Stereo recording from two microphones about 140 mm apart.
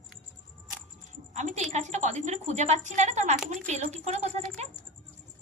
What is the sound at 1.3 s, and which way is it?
A woman's voice, 55° right (ahead or behind).